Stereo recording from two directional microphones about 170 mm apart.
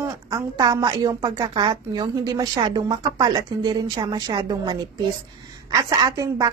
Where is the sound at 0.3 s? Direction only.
20° right (ahead or behind).